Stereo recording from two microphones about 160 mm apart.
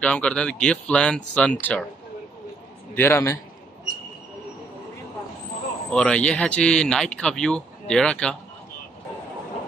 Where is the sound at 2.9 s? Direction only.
15° left (ahead or behind).